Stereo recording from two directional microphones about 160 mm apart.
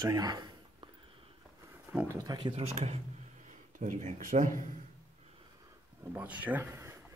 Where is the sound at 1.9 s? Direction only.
15° right (ahead or behind).